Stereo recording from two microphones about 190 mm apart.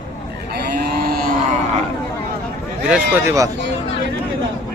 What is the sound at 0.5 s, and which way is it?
Cattle, 55° right (ahead or behind).